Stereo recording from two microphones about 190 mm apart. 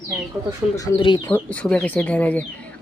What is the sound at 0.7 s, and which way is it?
Speech, 25° left (ahead or behind).